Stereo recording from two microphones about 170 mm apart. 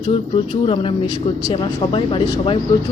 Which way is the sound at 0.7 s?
30° left (ahead or behind).